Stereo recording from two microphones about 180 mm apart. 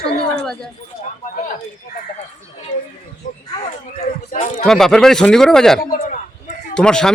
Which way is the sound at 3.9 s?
45° left (ahead or behind).